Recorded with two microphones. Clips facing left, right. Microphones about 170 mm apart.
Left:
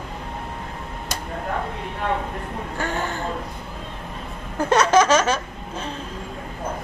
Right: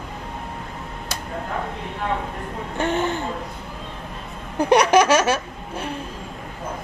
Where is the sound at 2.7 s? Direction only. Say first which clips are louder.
Right 5 dB; 20° right (ahead or behind).